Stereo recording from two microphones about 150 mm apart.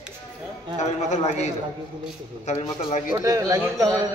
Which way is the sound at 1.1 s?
50° left (ahead or behind).